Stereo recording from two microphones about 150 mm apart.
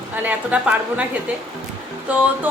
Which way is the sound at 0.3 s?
10° right (ahead or behind).